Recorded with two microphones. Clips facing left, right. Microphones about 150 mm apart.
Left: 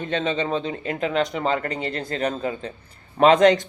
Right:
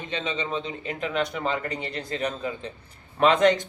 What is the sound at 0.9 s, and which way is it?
Speech, 30° left (ahead or behind).